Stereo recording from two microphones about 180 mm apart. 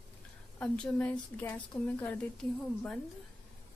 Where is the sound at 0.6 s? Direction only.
10° left (ahead or behind).